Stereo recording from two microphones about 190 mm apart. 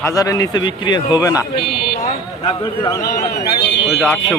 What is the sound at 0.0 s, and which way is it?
A man's voice, 15° left (ahead or behind).